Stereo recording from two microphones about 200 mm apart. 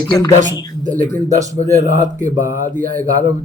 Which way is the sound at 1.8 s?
40° right (ahead or behind).